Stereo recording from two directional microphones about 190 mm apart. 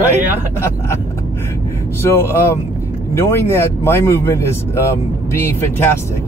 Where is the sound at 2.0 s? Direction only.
15° left (ahead or behind).